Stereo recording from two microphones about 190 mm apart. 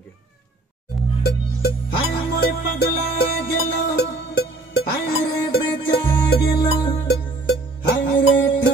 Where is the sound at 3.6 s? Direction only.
75° left (ahead or behind).